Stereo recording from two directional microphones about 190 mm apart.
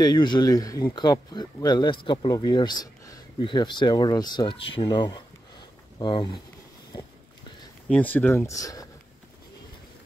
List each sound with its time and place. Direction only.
0.0 s speech: 20° left (ahead or behind)
7.9 s speech: 10° left (ahead or behind)